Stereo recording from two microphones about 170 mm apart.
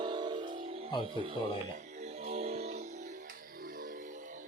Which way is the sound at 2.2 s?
35° right (ahead or behind).